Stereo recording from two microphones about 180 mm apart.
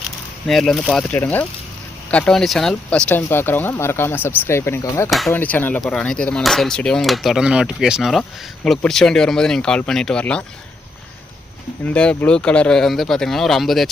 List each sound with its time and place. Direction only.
0.4 s speech: centre (ahead or behind)
11.9 s speech: 5° left (ahead or behind)